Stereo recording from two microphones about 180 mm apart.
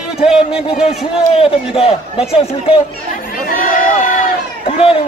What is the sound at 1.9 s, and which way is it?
Speech, 35° left (ahead or behind).